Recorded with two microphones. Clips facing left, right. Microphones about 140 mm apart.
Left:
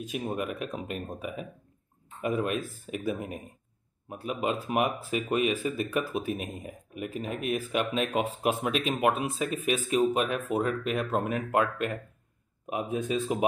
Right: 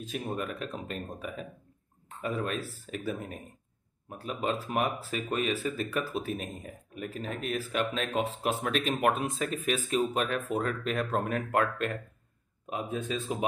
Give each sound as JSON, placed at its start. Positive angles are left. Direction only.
{"t": 0.0, "sound": "speech", "side_deg": 10}